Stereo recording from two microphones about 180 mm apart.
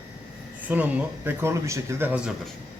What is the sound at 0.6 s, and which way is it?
Speech, 10° right (ahead or behind).